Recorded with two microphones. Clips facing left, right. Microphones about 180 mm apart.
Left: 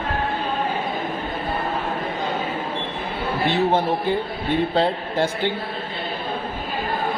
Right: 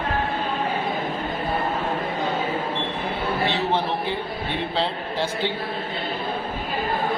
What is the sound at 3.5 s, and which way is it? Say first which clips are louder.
A man's voice: left 4 dB; 45° left (ahead or behind).